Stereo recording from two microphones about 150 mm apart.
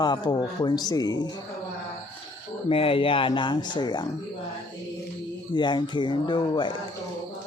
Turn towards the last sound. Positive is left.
turn(degrees=30)  # may be behind; listen again after turning